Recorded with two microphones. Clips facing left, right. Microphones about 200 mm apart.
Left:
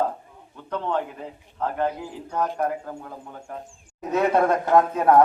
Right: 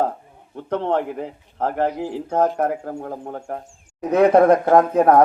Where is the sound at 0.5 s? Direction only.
65° right (ahead or behind).